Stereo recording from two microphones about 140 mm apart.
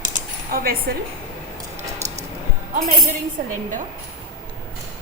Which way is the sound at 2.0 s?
20° right (ahead or behind).